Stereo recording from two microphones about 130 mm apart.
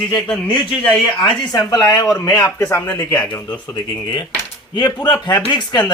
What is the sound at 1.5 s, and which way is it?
Speech, 30° left (ahead or behind).